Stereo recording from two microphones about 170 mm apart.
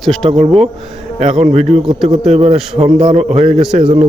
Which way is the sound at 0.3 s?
40° right (ahead or behind).